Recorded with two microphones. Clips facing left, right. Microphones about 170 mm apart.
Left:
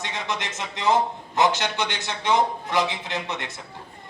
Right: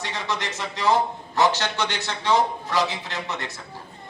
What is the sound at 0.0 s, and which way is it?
A man's voice, 20° left (ahead or behind).